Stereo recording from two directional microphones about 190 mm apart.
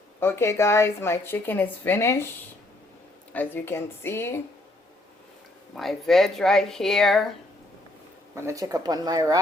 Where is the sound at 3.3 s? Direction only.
10° left (ahead or behind).